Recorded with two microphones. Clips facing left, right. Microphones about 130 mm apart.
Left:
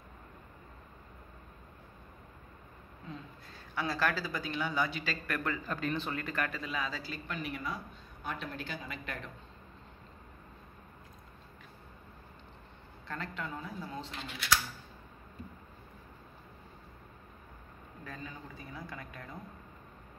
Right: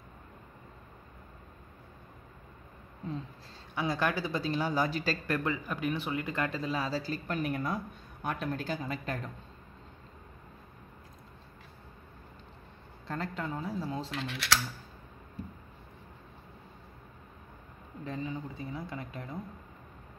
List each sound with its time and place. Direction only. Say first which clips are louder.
3.7 s speech: right 2 dB; 20° right (ahead or behind); by 5.2 s 40° right (ahead or behind)
5.2 s speech: right 4 dB; 25° right (ahead or behind)
5.7 s speech: right 2 dB; 10° right (ahead or behind); by 9.2 s 40° right (ahead or behind)
13.1 s speech: right 4 dB; 35° right (ahead or behind)
14.1 s speech: left 1 dB; 90° right
18.0 s speech: right 9 dB; 25° right (ahead or behind)